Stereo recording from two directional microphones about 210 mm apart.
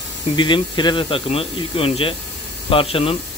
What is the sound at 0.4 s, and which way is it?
Speech, 20° left (ahead or behind).